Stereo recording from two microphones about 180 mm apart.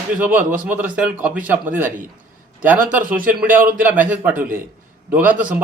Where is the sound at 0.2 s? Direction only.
10° right (ahead or behind).